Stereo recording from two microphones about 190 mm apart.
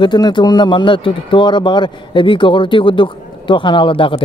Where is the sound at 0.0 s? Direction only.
25° left (ahead or behind).